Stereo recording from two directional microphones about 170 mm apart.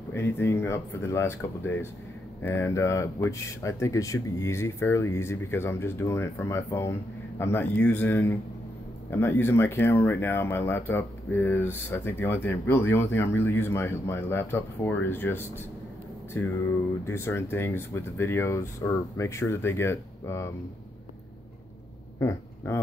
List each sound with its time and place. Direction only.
0.1 s speech: 15° left (ahead or behind)
22.2 s speech: 15° left (ahead or behind)